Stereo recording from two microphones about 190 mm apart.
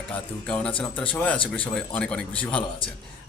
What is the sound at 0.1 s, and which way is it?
Speech, 5° left (ahead or behind).